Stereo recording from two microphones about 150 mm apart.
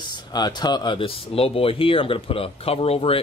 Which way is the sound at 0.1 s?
30° left (ahead or behind).